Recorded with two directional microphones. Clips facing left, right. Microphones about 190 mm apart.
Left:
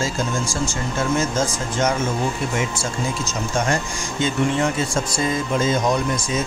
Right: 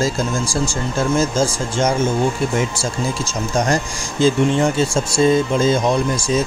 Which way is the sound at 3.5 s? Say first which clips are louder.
Right 4 dB; 35° right (ahead or behind).